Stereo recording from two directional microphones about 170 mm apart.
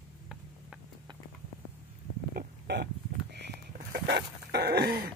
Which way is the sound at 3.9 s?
75° right (ahead or behind).